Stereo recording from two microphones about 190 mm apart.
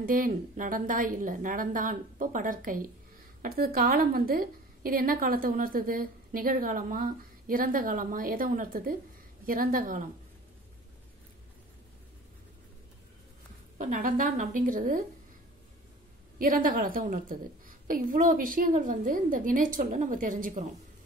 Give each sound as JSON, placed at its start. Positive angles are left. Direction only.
{"t": 0.0, "sound": "a woman's voice", "side_deg": -45}
{"t": 13.7, "sound": "a woman's voice", "side_deg": -40}
{"t": 16.3, "sound": "a woman's voice", "side_deg": -45}